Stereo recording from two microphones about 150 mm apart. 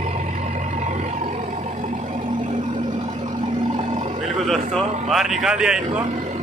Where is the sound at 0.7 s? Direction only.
50° right (ahead or behind).